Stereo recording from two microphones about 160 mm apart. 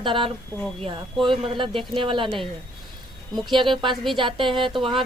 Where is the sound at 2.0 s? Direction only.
30° right (ahead or behind).